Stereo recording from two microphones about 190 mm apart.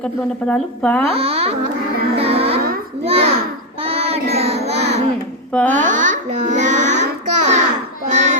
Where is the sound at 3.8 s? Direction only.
30° right (ahead or behind).